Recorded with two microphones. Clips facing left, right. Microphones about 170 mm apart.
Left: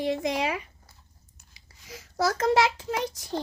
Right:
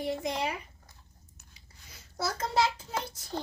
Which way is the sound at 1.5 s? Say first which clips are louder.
Left 13 dB; 90° left.